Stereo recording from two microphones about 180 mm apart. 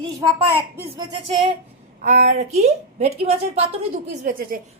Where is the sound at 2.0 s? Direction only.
40° right (ahead or behind).